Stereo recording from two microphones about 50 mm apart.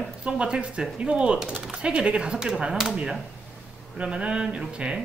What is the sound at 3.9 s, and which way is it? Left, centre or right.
Speech, right.